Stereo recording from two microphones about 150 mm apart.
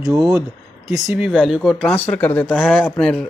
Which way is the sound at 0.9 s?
5° right (ahead or behind).